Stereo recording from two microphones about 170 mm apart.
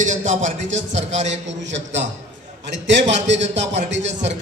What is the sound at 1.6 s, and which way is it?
Speech, 90° right.